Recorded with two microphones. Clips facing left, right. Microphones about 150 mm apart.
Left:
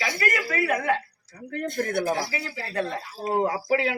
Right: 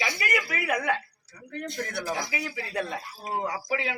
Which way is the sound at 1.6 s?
55° left (ahead or behind).